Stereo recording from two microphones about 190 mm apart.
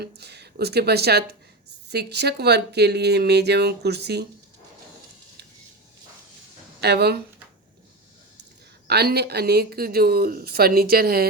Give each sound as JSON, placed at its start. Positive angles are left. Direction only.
{"t": 0.0, "sound": "speech", "side_deg": -60}
{"t": 6.8, "sound": "speech", "side_deg": -60}
{"t": 8.9, "sound": "speech", "side_deg": -60}